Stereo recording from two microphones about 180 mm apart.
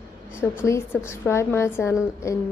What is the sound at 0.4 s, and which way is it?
A woman's voice, 15° left (ahead or behind).